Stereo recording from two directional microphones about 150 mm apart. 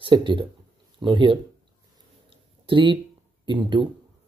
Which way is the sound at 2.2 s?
35° right (ahead or behind).